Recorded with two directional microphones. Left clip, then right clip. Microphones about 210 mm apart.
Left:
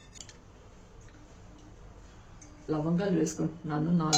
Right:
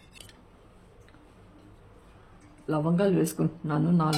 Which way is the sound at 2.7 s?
50° right (ahead or behind).